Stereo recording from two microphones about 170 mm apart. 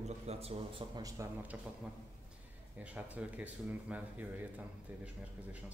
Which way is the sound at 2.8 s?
10° right (ahead or behind).